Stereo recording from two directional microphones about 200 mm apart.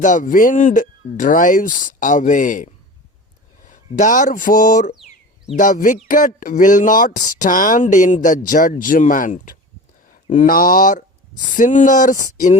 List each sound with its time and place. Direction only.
0.0 s speech: 40° left (ahead or behind)